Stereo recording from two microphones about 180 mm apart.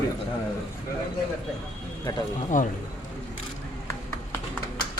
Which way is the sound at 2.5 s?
45° left (ahead or behind).